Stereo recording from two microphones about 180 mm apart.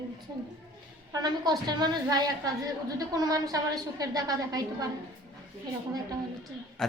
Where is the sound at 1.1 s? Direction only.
20° right (ahead or behind).